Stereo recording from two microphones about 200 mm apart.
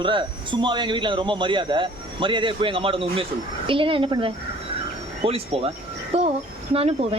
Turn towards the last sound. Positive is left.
turn(degrees=-30)  # may be behind; listen again after turning